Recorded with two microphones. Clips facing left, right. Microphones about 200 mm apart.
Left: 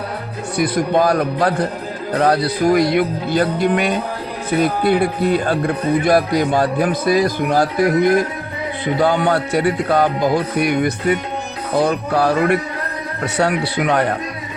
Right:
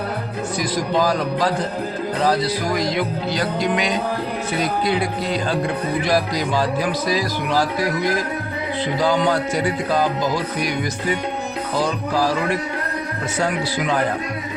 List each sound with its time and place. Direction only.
0.6 s speech: 60° left (ahead or behind)